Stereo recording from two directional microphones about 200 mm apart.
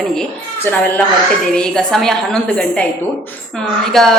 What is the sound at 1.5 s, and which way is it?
A woman's voice, 5° left (ahead or behind).